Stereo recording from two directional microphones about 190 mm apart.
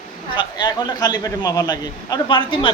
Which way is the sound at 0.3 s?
20° left (ahead or behind).